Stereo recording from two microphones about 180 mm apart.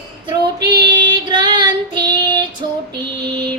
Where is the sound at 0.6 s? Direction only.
25° right (ahead or behind).